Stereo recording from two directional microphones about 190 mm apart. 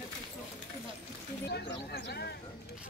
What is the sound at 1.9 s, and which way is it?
Speech, 60° left (ahead or behind).